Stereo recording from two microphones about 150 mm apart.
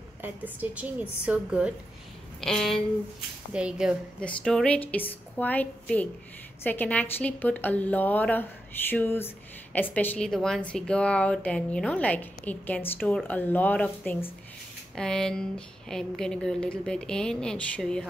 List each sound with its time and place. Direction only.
0.2 s a woman's voice: 10° right (ahead or behind)
2.4 s a woman's voice: 5° left (ahead or behind)
4.2 s a woman's voice: 5° left (ahead or behind)